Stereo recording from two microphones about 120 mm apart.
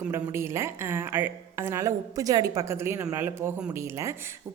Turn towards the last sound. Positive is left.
turn(degrees=-25)  # may be behind; listen again after turning